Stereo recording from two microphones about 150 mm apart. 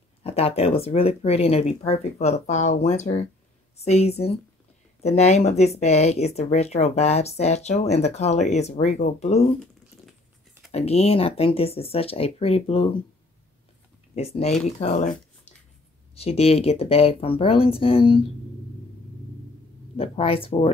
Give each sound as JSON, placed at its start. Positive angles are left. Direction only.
{"t": 0.2, "sound": "speech", "side_deg": 40}
{"t": 10.7, "sound": "speech", "side_deg": 45}
{"t": 14.4, "sound": "speech", "side_deg": 45}
{"t": 16.2, "sound": "speech", "side_deg": 40}
{"t": 20.0, "sound": "speech", "side_deg": 40}